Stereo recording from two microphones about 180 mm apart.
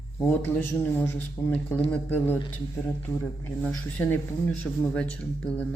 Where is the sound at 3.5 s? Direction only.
10° left (ahead or behind).